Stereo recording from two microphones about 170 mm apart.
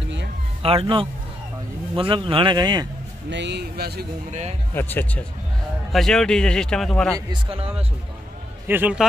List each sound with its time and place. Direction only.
0.6 s a man's voice: 35° right (ahead or behind)
3.3 s speech: 90° right; by 4.0 s 70° right (ahead or behind)
4.3 s speech: 40° right (ahead or behind)
4.7 s a man's voice: 10° left (ahead or behind)
7.5 s speech: 35° right (ahead or behind)
8.6 s a man's voice: 10° right (ahead or behind)